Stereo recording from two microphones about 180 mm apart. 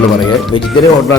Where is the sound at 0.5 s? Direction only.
25° left (ahead or behind).